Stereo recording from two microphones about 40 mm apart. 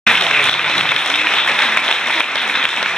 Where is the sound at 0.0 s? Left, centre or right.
Centre.